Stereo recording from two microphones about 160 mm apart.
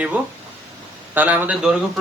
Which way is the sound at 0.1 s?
10° right (ahead or behind).